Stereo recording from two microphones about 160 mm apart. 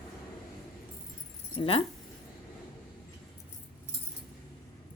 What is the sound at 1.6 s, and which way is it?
Speech, 30° left (ahead or behind).